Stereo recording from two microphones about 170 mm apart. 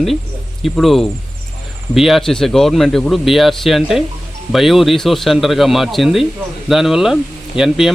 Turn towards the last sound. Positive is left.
turn(degrees=0)  # may be behind; listen again after turning